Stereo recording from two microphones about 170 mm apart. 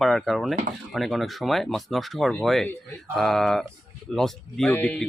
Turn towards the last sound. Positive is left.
turn(degrees=10)  # may be behind; listen again after turning